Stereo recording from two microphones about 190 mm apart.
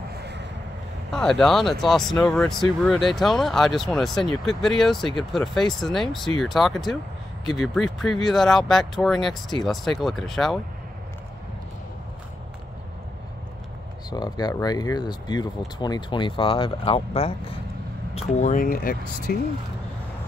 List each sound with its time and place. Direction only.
0.1 s vehicle: 60° right (ahead or behind)
1.1 s speech: centre (ahead or behind)
14.1 s speech: 20° left (ahead or behind)
18.1 s speech: 40° left (ahead or behind)